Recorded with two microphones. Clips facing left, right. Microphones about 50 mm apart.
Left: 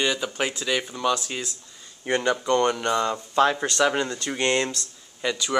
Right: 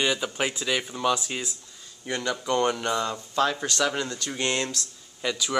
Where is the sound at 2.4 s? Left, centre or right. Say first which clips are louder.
Left 3 dB; centre.